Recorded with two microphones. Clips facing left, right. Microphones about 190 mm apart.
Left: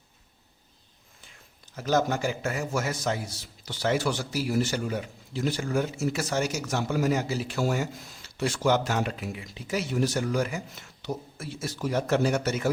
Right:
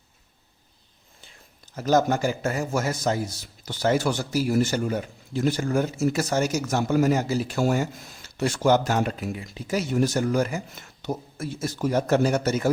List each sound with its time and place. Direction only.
1.7 s a man's voice: 40° right (ahead or behind)